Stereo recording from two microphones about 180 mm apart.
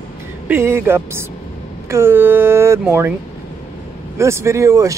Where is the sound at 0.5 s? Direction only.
15° right (ahead or behind).